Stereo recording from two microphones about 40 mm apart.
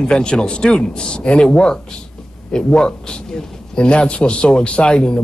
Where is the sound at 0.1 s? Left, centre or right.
Left.